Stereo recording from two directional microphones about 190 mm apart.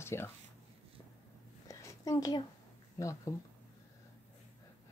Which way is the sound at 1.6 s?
15° left (ahead or behind).